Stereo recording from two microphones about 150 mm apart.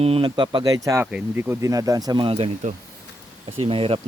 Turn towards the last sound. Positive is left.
turn(degrees=-35)  # may be behind; listen again after turning